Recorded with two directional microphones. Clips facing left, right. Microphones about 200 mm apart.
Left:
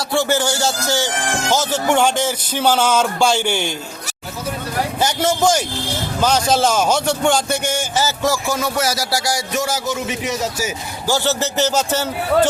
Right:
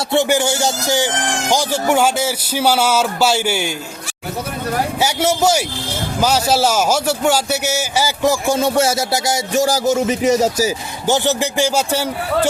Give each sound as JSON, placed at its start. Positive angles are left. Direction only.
{"t": 0.1, "sound": "speech", "side_deg": -15}
{"t": 4.9, "sound": "speech", "side_deg": -10}
{"t": 9.6, "sound": "speech", "side_deg": -35}
{"t": 11.0, "sound": "speech", "side_deg": -20}